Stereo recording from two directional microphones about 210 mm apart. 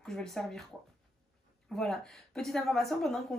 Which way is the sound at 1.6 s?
Centre (ahead or behind).